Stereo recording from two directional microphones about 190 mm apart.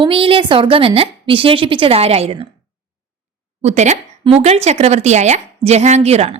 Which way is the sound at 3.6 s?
40° right (ahead or behind).